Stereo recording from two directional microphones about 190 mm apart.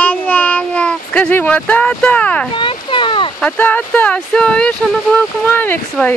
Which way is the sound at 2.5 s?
25° left (ahead or behind).